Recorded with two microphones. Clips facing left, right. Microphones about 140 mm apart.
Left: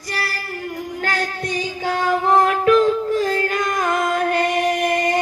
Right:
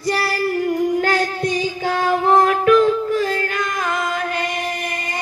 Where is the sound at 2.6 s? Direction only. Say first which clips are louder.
Right 1 dB; 30° left (ahead or behind).